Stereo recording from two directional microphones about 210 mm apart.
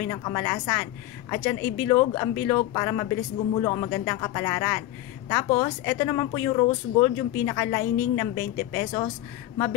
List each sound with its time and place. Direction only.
0.0 s speech: 15° left (ahead or behind)